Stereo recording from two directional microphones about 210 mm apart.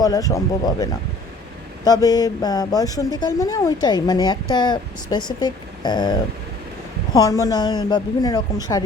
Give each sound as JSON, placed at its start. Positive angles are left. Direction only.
{"t": 0.0, "sound": "speech", "side_deg": 15}